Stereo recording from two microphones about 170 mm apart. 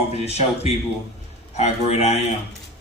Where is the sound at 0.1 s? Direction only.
40° left (ahead or behind).